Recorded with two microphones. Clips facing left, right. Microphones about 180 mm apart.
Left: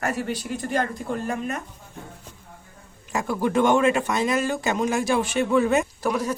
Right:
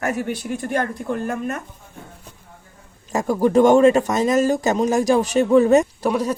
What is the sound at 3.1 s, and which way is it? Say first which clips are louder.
Speech: right 6 dB; 40° right (ahead or behind).